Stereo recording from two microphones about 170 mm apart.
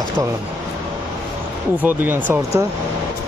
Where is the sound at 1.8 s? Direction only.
10° right (ahead or behind).